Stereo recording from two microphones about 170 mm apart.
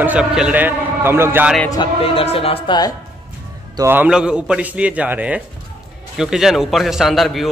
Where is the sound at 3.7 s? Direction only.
15° right (ahead or behind).